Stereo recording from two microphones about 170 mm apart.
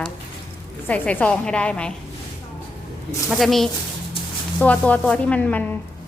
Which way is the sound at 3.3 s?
Centre (ahead or behind).